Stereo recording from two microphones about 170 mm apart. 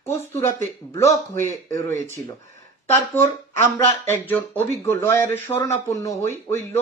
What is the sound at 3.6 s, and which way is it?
Speech, 15° left (ahead or behind).